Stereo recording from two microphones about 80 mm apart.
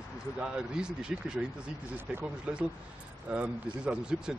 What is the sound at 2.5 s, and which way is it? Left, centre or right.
Speech, centre.